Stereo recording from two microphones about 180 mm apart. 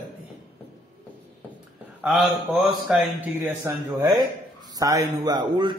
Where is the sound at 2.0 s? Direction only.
Centre (ahead or behind).